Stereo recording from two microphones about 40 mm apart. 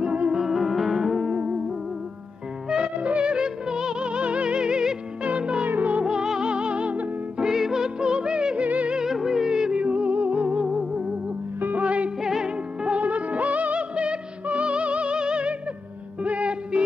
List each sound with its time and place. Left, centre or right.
0.0 s music: right
0.4 s music: centre
1.3 s music: right
3.0 s music: right
5.7 s music: right
6.0 s music: centre; by 7.4 s right
7.4 s music: centre
8.6 s music: right
8.9 s music: centre
9.8 s music: right
10.7 s music: centre
11.8 s music: right
12.2 s music: centre
12.9 s music: right